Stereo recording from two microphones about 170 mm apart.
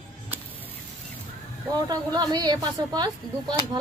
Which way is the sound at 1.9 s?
25° right (ahead or behind).